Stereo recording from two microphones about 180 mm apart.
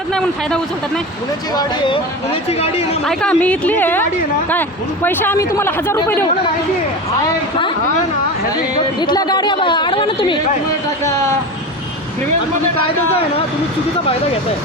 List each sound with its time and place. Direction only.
0.1 s speech: 5° left (ahead or behind)
1.5 s speech: 25° left (ahead or behind)
3.0 s speech: 5° left (ahead or behind)
5.0 s speech: 10° left (ahead or behind)
8.5 s speech: 20° left (ahead or behind)